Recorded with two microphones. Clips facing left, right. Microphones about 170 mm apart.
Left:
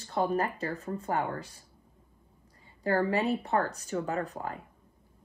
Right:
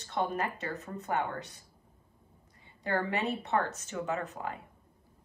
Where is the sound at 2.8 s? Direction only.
35° left (ahead or behind).